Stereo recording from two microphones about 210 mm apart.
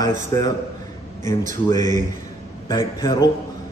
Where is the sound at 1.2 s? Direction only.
35° right (ahead or behind).